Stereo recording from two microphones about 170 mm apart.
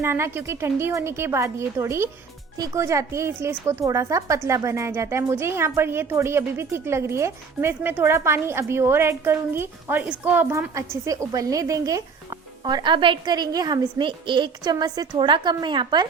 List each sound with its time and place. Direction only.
0.0 s speech: 15° right (ahead or behind)